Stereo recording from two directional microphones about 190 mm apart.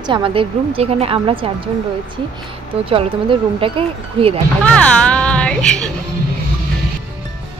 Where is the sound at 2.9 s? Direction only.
30° right (ahead or behind).